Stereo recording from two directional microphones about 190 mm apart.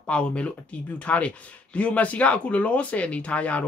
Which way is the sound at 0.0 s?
5° left (ahead or behind).